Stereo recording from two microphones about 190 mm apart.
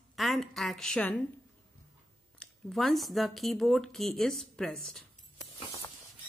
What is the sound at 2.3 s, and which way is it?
Speech, 5° left (ahead or behind).